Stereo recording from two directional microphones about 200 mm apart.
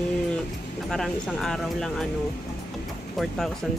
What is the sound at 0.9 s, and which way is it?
Speech, centre (ahead or behind).